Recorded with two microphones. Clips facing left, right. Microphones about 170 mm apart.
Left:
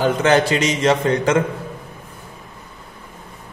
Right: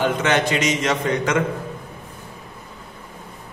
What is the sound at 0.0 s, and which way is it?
A man's voice, 35° left (ahead or behind).